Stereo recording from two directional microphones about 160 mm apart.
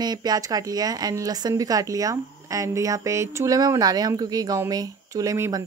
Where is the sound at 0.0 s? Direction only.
25° right (ahead or behind).